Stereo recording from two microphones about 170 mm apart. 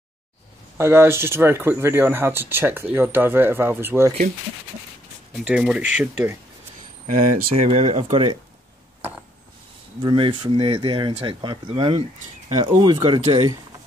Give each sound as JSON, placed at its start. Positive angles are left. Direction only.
{"t": 0.7, "sound": "speech", "side_deg": -15}
{"t": 5.3, "sound": "speech", "side_deg": -5}
{"t": 7.1, "sound": "speech", "side_deg": -40}
{"t": 10.0, "sound": "speech", "side_deg": -25}